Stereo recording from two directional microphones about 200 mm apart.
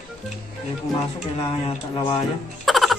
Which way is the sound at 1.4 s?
25° left (ahead or behind).